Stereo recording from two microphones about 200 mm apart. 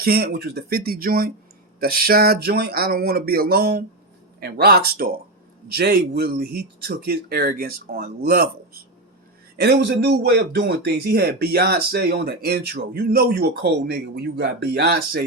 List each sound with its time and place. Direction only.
0.0 s speech: 50° right (ahead or behind)